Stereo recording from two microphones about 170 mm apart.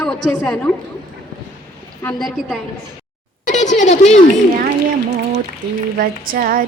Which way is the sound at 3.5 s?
45° left (ahead or behind).